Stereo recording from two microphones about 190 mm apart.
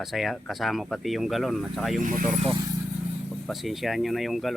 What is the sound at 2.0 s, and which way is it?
Speech, 45° right (ahead or behind).